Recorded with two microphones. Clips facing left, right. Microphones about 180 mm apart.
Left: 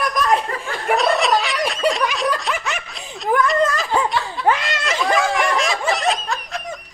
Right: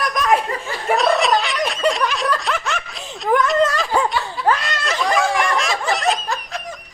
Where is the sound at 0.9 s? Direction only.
Centre (ahead or behind).